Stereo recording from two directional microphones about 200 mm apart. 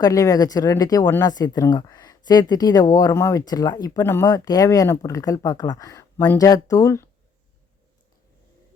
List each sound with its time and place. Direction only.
0.0 s speech: 15° left (ahead or behind)